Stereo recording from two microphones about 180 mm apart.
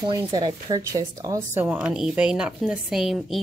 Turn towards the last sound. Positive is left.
turn(degrees=0)  # may be behind; listen again after turning